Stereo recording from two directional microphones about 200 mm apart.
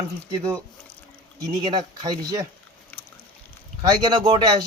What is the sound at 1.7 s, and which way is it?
Speech, 20° right (ahead or behind).